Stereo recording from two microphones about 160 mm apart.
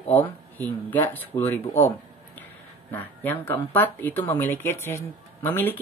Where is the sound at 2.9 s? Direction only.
10° left (ahead or behind).